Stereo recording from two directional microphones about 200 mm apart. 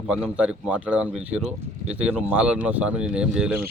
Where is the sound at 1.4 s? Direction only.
30° right (ahead or behind).